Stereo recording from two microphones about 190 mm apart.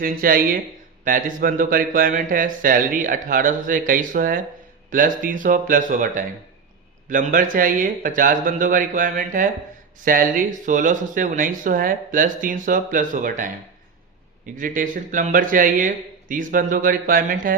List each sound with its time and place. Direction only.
0.0 s speech: 50° right (ahead or behind)